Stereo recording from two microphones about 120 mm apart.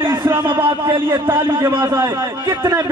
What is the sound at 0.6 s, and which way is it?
A man's voice, 45° right (ahead or behind).